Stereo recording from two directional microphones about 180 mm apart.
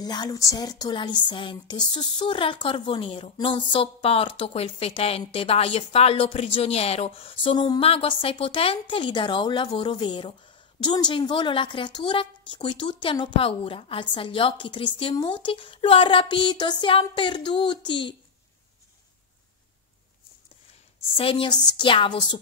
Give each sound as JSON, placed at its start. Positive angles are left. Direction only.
{"t": 0.0, "sound": "a woman's voice", "side_deg": 25}
{"t": 21.2, "sound": "a woman's voice", "side_deg": 30}